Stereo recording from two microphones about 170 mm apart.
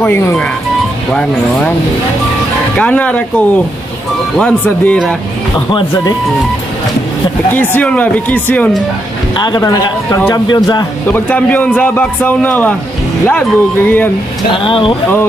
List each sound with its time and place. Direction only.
0.0 s a man's voice: 10° left (ahead or behind)
2.8 s a man's voice: 10° left (ahead or behind)
5.7 s speech: 25° left (ahead or behind)
7.5 s a man's voice: 10° left (ahead or behind)
9.4 s speech: 25° left (ahead or behind)
10.0 s a man's voice: 10° left (ahead or behind)
10.3 s speech: 25° left (ahead or behind)
11.1 s a man's voice: 10° left (ahead or behind)
14.5 s speech: 30° left (ahead or behind)